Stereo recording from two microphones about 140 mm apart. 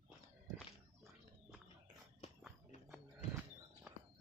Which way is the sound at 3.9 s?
10° right (ahead or behind).